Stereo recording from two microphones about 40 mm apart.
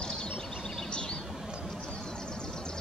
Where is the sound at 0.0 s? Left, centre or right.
Centre.